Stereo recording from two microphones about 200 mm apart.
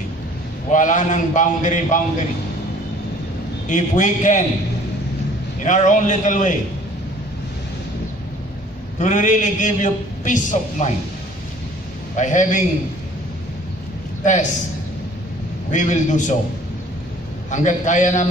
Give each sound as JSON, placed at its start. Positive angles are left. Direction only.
{"t": 0.7, "sound": "a man's voice", "side_deg": 40}
{"t": 3.6, "sound": "a man's voice", "side_deg": 40}
{"t": 5.6, "sound": "a man's voice", "side_deg": 40}
{"t": 9.0, "sound": "a man's voice", "side_deg": 40}
{"t": 12.2, "sound": "a man's voice", "side_deg": 40}
{"t": 15.7, "sound": "a man's voice", "side_deg": 40}
{"t": 17.5, "sound": "a man's voice", "side_deg": 40}